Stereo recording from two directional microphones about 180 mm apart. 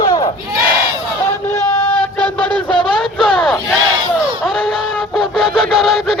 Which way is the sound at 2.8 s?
5° left (ahead or behind).